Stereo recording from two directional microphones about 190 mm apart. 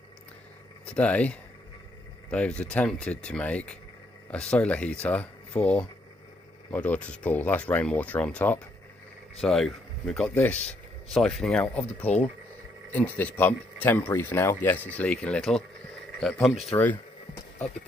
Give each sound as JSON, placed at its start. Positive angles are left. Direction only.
{"t": 0.8, "sound": "speech", "side_deg": 5}
{"t": 10.6, "sound": "a sound", "side_deg": 35}
{"t": 11.1, "sound": "speech", "side_deg": 0}